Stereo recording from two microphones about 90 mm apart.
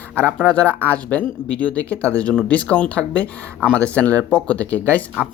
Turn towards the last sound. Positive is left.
turn(degrees=15)  # may be behind; listen again after turning